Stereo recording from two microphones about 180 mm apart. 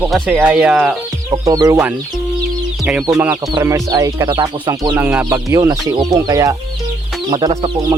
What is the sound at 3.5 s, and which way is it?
Speech, 20° right (ahead or behind).